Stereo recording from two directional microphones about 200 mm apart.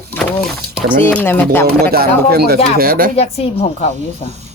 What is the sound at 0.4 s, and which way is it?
Speech, 5° right (ahead or behind).